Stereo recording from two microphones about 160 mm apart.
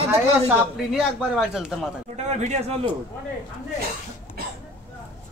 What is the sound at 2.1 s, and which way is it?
Speech, 45° right (ahead or behind).